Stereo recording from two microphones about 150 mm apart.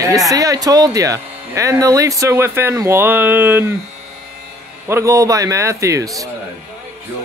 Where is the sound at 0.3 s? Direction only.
25° right (ahead or behind).